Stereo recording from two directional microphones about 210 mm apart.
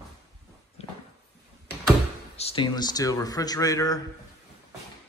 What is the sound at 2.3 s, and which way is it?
A man's voice, 25° left (ahead or behind).